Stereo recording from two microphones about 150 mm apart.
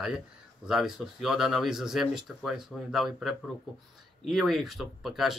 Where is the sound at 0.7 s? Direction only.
5° right (ahead or behind).